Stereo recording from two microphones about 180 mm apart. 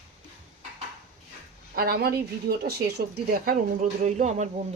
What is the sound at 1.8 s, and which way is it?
A woman's voice, 60° right (ahead or behind).